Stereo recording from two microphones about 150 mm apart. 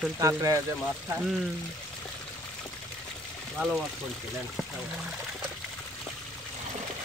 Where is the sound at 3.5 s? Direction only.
Centre (ahead or behind).